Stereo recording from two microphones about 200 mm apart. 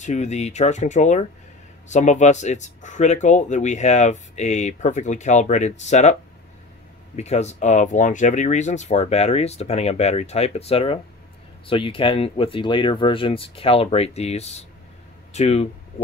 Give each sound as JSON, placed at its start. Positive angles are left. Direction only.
{"t": 0.0, "sound": "speech", "side_deg": 35}
{"t": 7.2, "sound": "speech", "side_deg": 35}